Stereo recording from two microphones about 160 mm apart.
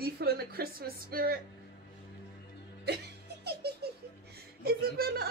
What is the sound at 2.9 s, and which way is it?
Music, 90° right.